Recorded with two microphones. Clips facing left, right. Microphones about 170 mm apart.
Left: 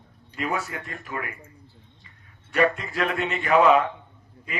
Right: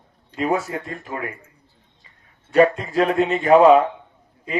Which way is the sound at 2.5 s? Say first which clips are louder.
Right 7 dB; 30° right (ahead or behind).